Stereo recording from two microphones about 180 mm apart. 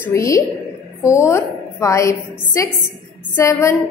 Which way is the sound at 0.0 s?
15° left (ahead or behind).